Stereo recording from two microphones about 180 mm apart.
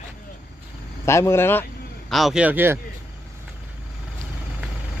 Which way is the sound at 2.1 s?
Centre (ahead or behind).